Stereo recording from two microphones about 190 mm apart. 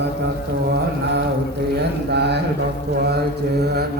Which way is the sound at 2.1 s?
60° right (ahead or behind).